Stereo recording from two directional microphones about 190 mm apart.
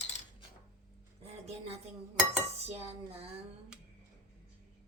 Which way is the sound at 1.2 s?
35° right (ahead or behind).